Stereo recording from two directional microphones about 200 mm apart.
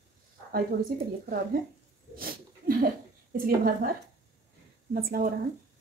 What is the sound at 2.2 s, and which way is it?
Speech, 45° right (ahead or behind).